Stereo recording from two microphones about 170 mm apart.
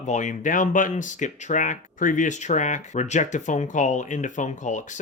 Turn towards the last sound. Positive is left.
turn(degrees=45)  # may be behind; listen again after turning